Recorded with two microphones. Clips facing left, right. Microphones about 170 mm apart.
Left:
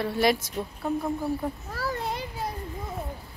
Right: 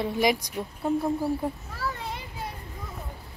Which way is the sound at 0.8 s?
25° right (ahead or behind).